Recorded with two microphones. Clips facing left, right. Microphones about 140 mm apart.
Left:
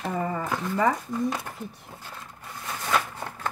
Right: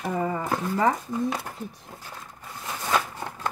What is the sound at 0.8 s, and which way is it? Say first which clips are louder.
Speech: left 1 dB; 5° right (ahead or behind).